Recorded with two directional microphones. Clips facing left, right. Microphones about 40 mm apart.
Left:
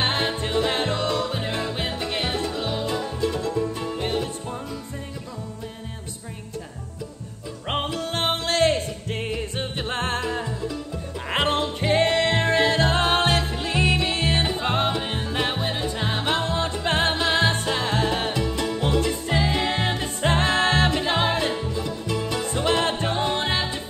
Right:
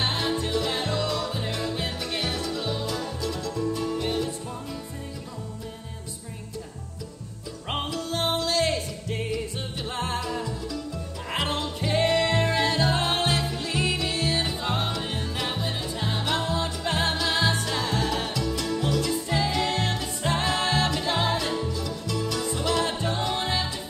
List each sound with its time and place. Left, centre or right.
0.0 s music: left
7.6 s music: left
8.0 s music: left
10.2 s music: left
20.2 s music: left
23.1 s music: left